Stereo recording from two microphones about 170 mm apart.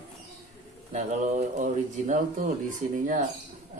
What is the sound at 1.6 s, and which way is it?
Speech, 50° right (ahead or behind).